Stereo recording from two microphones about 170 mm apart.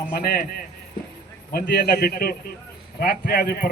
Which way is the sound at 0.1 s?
60° left (ahead or behind).